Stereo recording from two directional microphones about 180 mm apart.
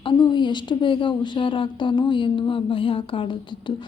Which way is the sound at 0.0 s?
25° left (ahead or behind).